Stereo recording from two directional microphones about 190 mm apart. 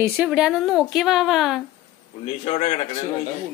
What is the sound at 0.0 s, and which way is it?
Speech, 5° right (ahead or behind).